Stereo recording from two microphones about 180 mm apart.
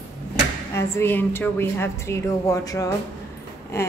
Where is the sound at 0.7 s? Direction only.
10° left (ahead or behind).